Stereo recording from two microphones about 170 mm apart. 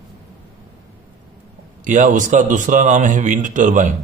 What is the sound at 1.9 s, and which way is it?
Speech, 50° right (ahead or behind).